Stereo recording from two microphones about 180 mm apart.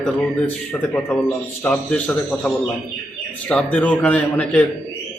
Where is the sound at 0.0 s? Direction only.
5° left (ahead or behind).